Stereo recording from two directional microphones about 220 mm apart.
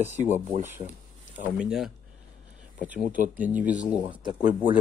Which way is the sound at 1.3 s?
5° right (ahead or behind).